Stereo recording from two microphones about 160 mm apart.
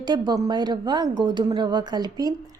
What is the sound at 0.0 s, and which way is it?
A woman's voice, 25° right (ahead or behind).